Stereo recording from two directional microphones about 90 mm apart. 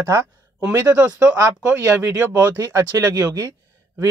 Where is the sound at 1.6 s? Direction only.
20° right (ahead or behind).